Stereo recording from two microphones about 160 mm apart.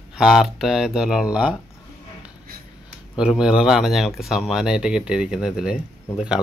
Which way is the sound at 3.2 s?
5° right (ahead or behind).